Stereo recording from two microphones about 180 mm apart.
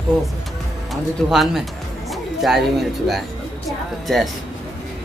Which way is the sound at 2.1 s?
Centre (ahead or behind).